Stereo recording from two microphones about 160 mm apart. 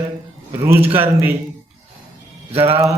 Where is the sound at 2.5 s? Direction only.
40° right (ahead or behind).